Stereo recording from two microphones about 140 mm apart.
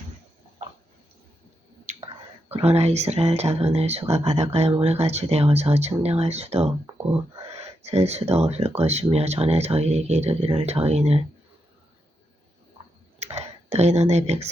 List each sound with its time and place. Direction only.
1.9 s whispering: 55° right (ahead or behind)
2.5 s speech: 50° right (ahead or behind)
13.1 s a sound: 50° right (ahead or behind)